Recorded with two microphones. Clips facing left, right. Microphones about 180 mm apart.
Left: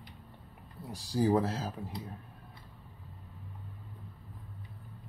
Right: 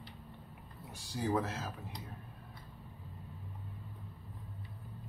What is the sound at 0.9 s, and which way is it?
Speech, 35° left (ahead or behind).